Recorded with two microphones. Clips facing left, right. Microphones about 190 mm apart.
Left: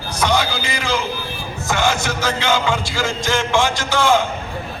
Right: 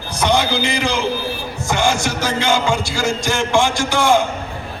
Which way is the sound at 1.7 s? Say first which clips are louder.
Right 1 dB; 15° right (ahead or behind).